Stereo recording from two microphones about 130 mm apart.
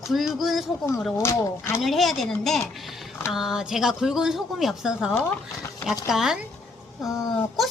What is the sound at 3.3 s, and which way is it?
Speech, 5° right (ahead or behind).